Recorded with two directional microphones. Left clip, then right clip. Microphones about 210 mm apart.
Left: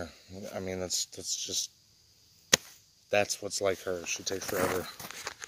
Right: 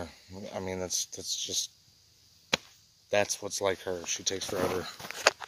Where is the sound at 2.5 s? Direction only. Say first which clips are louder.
Left 4 dB; 40° left (ahead or behind).